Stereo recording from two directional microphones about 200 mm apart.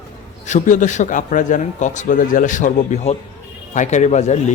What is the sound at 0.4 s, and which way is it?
Speech, 40° left (ahead or behind).